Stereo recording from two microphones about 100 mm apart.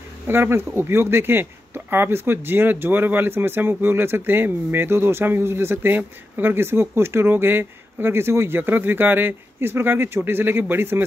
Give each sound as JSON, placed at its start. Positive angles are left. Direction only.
{"t": 0.3, "sound": "speech", "side_deg": -25}